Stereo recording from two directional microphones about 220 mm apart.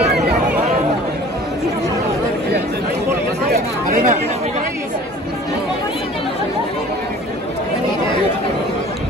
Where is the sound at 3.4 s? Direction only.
40° right (ahead or behind).